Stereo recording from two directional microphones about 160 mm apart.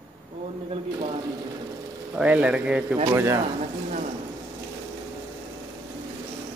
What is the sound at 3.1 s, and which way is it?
Speech, 20° right (ahead or behind).